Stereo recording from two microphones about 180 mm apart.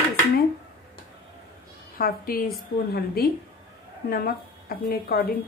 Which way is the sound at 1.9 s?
55° left (ahead or behind).